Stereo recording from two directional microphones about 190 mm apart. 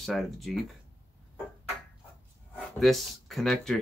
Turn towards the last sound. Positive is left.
turn(degrees=0)  # may be behind; listen again after turning